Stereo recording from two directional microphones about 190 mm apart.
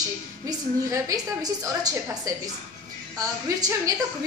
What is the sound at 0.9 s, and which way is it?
A woman's voice, 20° right (ahead or behind).